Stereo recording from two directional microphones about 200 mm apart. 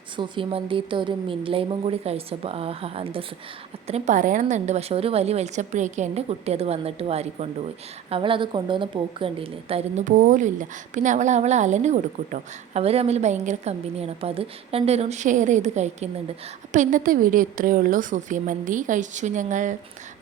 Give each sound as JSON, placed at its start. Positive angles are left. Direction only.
{"t": 0.2, "sound": "a woman's voice", "side_deg": -25}